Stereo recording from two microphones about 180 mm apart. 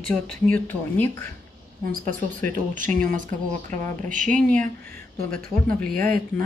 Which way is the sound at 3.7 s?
45° right (ahead or behind).